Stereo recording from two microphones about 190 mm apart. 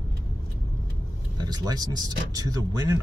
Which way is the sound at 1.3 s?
20° right (ahead or behind).